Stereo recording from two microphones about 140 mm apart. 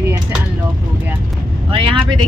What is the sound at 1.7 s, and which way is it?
Speech, 35° right (ahead or behind).